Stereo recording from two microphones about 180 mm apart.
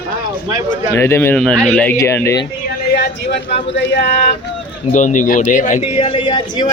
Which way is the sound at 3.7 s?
75° left (ahead or behind).